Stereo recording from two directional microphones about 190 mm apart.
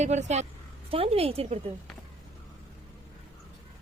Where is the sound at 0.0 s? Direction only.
35° right (ahead or behind).